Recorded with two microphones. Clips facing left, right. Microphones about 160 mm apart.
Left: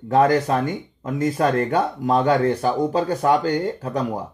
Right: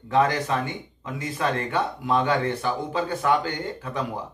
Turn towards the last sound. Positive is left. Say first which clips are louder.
# left 5 dB
turn(degrees=40)  # may be behind; listen again after turning